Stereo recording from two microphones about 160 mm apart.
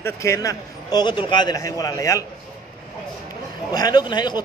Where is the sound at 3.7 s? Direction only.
25° left (ahead or behind).